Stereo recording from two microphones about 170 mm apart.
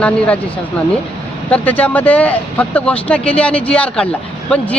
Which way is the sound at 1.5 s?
10° left (ahead or behind).